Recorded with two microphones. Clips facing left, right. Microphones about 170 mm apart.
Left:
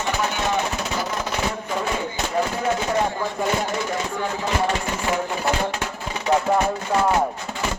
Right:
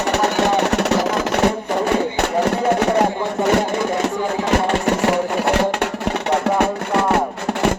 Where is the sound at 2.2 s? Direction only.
65° right (ahead or behind).